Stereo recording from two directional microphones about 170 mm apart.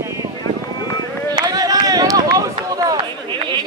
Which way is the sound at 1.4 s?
20° right (ahead or behind).